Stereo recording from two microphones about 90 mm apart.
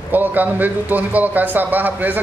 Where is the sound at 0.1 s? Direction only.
20° right (ahead or behind).